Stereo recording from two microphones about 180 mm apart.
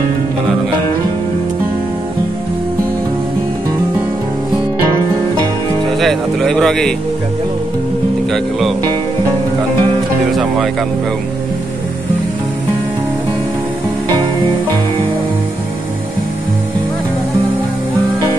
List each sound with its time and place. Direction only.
5.9 s a sound: centre (ahead or behind)
8.3 s speech: centre (ahead or behind)
10.3 s speech: centre (ahead or behind)